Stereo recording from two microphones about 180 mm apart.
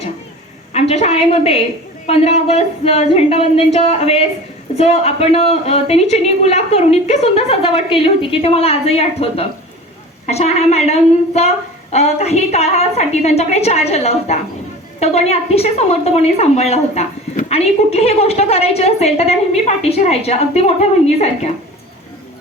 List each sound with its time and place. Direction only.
0.7 s a woman's voice: 35° left (ahead or behind)